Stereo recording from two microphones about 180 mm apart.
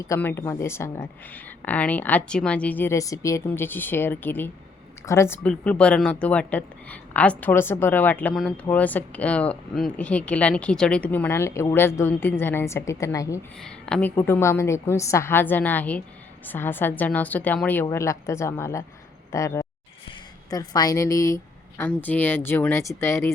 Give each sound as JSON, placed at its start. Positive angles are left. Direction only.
{"t": 0.0, "sound": "speech", "side_deg": 15}
{"t": 13.6, "sound": "a woman's voice", "side_deg": 5}
{"t": 20.1, "sound": "a sound", "side_deg": 20}
{"t": 21.8, "sound": "speech", "side_deg": 10}